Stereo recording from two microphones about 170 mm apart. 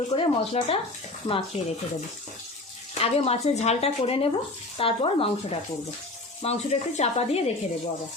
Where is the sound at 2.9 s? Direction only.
35° left (ahead or behind).